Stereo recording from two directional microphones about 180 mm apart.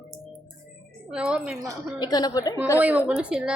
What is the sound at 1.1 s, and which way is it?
Speech, 5° right (ahead or behind).